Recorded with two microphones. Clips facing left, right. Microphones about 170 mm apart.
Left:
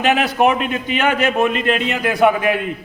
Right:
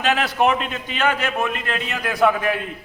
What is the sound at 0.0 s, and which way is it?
A man's voice, 15° left (ahead or behind).